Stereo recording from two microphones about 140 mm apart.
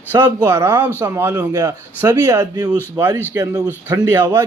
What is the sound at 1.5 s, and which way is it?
A man's voice, 25° right (ahead or behind).